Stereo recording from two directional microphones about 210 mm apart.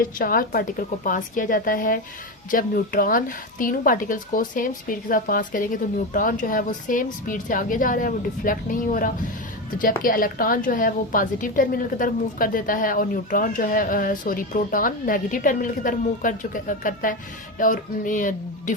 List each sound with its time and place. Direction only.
0.0 s a woman's voice: 40° left (ahead or behind)